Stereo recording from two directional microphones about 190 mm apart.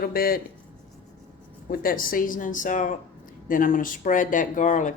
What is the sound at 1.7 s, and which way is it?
Speech, 50° left (ahead or behind).